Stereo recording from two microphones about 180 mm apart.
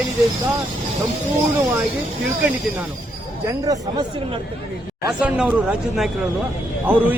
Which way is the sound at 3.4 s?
20° right (ahead or behind).